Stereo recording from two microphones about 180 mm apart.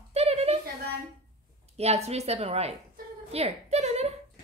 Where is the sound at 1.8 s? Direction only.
35° right (ahead or behind).